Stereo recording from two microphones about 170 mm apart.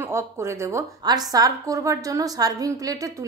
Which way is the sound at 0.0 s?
15° right (ahead or behind).